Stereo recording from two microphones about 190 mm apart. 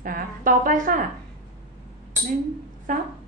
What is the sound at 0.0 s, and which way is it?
A woman's voice, 45° right (ahead or behind).